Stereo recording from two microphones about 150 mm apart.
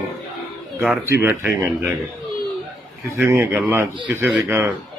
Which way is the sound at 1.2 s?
10° right (ahead or behind).